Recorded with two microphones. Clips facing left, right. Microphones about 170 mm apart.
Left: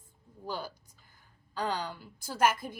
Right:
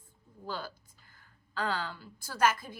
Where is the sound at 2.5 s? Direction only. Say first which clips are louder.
Left 3 dB; 50° left (ahead or behind).